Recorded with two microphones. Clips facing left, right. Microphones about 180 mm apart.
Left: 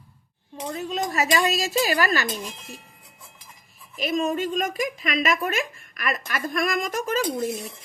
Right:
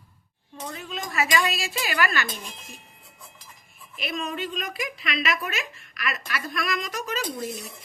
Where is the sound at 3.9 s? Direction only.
45° left (ahead or behind).